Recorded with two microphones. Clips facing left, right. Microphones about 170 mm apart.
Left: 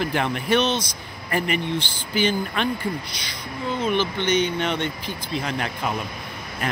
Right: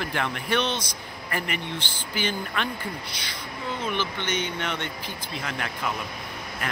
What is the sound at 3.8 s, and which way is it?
Speech, 20° left (ahead or behind).